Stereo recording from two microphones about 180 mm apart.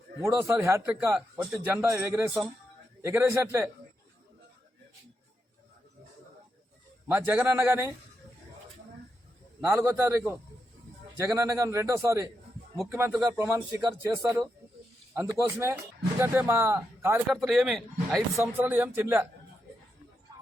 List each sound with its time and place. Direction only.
0.3 s a man's voice: 15° right (ahead or behind)
7.1 s a man's voice: 10° right (ahead or behind)
9.6 s a man's voice: 15° right (ahead or behind)
17.3 s a man's voice: centre (ahead or behind)